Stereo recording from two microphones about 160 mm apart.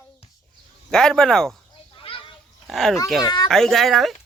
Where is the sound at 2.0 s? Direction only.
35° left (ahead or behind).